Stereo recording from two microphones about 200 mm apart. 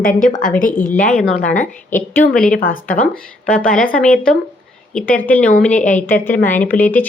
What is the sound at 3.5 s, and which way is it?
Speech, 40° left (ahead or behind).